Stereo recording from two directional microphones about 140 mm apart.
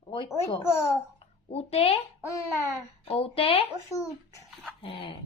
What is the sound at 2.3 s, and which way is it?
Speech, 20° left (ahead or behind).